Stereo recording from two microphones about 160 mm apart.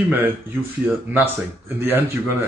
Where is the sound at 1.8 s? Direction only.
10° right (ahead or behind).